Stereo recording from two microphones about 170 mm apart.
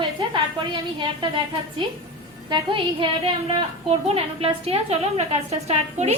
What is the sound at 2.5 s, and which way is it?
A woman's voice, 30° right (ahead or behind).